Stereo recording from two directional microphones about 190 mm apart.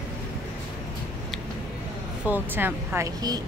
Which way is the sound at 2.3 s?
10° right (ahead or behind).